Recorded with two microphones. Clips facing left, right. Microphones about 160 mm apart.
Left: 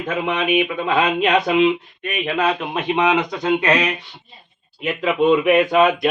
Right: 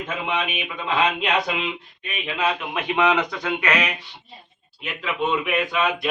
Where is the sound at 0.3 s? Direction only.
55° left (ahead or behind).